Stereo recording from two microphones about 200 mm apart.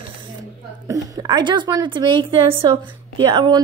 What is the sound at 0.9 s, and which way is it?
A woman's voice, 20° right (ahead or behind).